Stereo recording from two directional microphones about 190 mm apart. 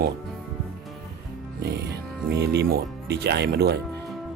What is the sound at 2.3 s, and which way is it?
Speech, 60° right (ahead or behind).